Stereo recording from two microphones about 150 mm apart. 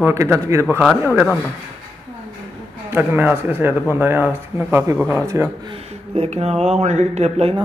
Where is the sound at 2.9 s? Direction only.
15° right (ahead or behind).